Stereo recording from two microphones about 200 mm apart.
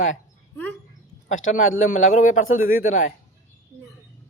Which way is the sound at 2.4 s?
90° left.